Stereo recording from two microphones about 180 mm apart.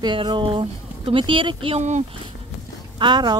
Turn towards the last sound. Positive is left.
turn(degrees=-25)  # may be behind; listen again after turning